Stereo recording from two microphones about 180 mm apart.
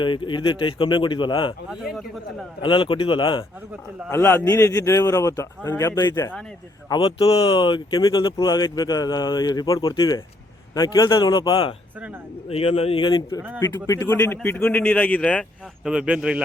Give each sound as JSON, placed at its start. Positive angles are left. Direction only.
{"t": 0.0, "sound": "speech", "side_deg": 25}
{"t": 1.7, "sound": "speech", "side_deg": 0}
{"t": 2.6, "sound": "speech", "side_deg": 25}
{"t": 4.1, "sound": "a man's voice", "side_deg": 15}
{"t": 15.8, "sound": "speech", "side_deg": -5}